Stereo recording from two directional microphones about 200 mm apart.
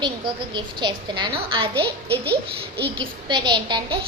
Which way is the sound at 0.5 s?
20° right (ahead or behind).